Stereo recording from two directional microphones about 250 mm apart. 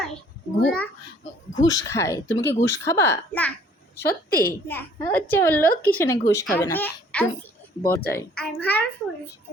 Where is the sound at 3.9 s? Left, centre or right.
Left.